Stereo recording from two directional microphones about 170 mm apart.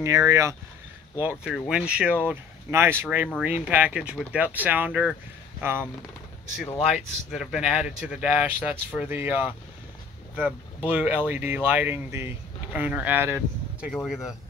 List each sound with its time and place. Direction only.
0.0 s speech: 20° right (ahead or behind)
1.1 s speech: 5° right (ahead or behind)
6.6 s speech: centre (ahead or behind)